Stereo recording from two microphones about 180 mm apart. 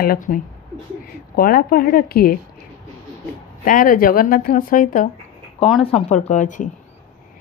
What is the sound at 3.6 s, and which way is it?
A woman's voice, 45° left (ahead or behind).